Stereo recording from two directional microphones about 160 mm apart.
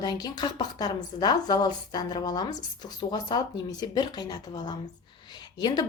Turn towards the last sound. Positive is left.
turn(degrees=25)  # may be behind; listen again after turning